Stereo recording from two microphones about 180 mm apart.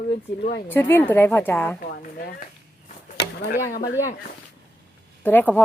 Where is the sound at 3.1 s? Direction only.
65° left (ahead or behind).